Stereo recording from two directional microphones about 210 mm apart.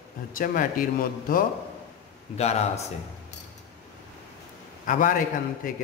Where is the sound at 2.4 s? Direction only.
30° left (ahead or behind).